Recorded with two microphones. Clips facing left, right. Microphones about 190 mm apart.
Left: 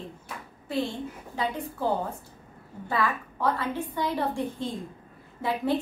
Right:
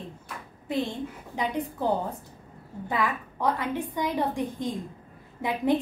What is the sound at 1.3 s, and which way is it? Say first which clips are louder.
A woman's voice: right 2 dB; 20° right (ahead or behind).